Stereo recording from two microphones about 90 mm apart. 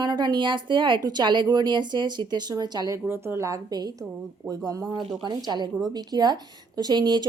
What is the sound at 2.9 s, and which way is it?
A woman's voice, 25° right (ahead or behind).